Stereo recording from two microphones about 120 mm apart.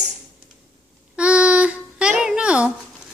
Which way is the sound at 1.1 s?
10° right (ahead or behind).